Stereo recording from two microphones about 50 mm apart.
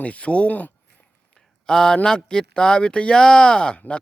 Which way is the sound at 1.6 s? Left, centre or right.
Centre.